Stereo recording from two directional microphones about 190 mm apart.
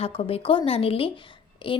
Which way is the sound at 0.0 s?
30° left (ahead or behind).